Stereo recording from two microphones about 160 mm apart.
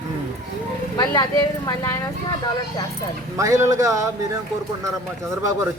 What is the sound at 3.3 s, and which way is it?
Speech, 20° right (ahead or behind).